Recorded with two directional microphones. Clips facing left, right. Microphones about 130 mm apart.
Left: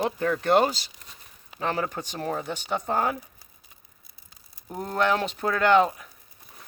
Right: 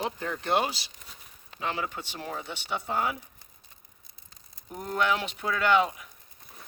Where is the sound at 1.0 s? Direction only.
Centre (ahead or behind).